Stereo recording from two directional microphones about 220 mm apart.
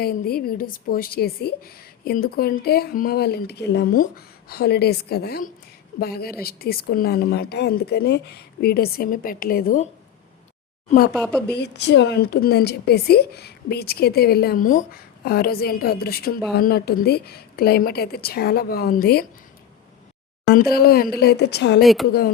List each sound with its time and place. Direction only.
0.0 s a woman's voice: 45° left (ahead or behind)
11.1 s speech: 5° left (ahead or behind)
11.4 s a woman's voice: 50° left (ahead or behind)
20.5 s a woman's voice: 45° left (ahead or behind)
21.8 s speech: centre (ahead or behind)